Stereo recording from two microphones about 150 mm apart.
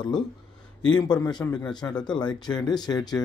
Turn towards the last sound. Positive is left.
turn(degrees=25)  # may be behind; listen again after turning